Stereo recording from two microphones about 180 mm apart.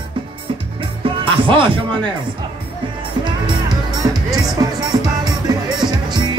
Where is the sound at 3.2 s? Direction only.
25° right (ahead or behind).